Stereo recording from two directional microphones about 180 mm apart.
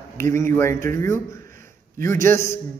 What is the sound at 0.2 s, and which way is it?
A man's voice, 15° left (ahead or behind).